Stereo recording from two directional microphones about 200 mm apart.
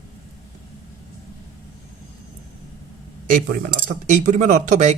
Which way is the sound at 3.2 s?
40° right (ahead or behind).